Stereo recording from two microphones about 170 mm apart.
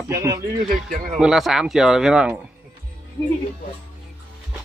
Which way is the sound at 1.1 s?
5° right (ahead or behind).